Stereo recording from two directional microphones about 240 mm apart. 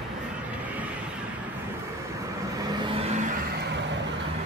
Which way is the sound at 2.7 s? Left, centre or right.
Right.